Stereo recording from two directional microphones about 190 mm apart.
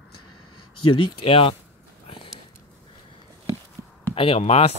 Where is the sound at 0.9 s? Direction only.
30° left (ahead or behind).